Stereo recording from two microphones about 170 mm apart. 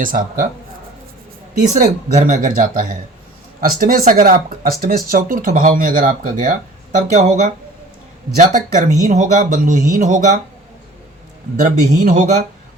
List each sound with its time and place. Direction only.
0.0 s speech: 50° right (ahead or behind)
1.5 s speech: 50° right (ahead or behind)
8.4 s speech: 50° right (ahead or behind)
12.0 s speech: 45° right (ahead or behind)